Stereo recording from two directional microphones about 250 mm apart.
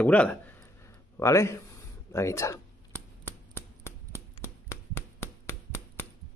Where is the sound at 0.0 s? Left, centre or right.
Centre.